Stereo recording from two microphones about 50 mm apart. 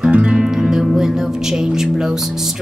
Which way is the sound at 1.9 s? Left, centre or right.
Centre.